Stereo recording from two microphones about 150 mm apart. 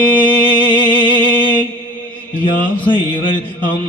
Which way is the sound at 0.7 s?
35° left (ahead or behind).